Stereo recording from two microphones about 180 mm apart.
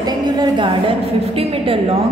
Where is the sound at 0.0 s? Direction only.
25° right (ahead or behind).